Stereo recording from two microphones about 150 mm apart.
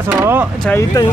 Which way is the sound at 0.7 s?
25° left (ahead or behind).